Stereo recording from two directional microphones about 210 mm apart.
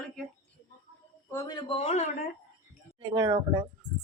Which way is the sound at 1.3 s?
15° left (ahead or behind).